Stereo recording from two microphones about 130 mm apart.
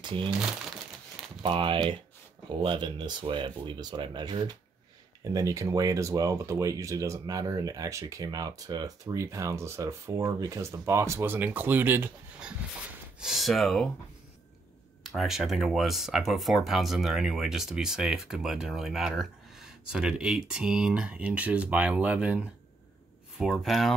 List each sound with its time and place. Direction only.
0.0 s speech: 40° right (ahead or behind)
1.4 s speech: 40° right (ahead or behind); by 12.1 s 15° right (ahead or behind)
13.2 s speech: centre (ahead or behind)
15.0 s speech: centre (ahead or behind)